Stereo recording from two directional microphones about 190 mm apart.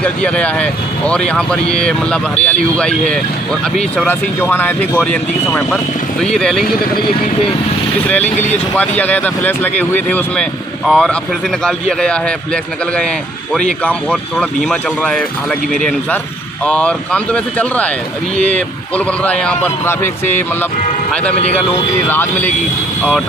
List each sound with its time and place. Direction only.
0.0 s speech: 5° left (ahead or behind)
8.7 s speech: 5° left (ahead or behind)
13.6 s speech: 5° left (ahead or behind)